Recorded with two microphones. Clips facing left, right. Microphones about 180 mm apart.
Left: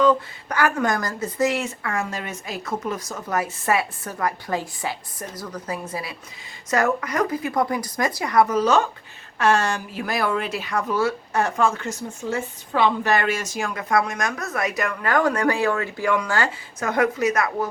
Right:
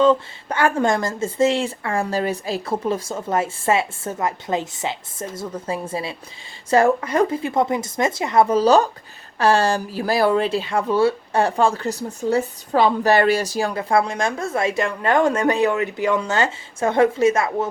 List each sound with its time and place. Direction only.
0.0 s speech: 25° right (ahead or behind)